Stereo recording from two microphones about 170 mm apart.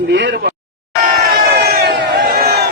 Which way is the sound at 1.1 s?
75° right (ahead or behind).